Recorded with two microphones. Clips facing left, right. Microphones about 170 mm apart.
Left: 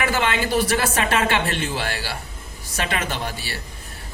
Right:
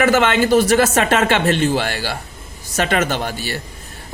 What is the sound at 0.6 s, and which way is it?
Speech, 45° right (ahead or behind).